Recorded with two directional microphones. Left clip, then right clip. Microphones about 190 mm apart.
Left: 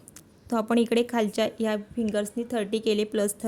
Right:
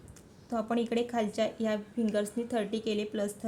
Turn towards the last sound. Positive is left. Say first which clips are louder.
# left 7 dB
turn(degrees=45)  # may be behind; listen again after turning